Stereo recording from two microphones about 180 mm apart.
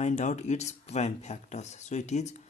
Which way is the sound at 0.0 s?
40° left (ahead or behind).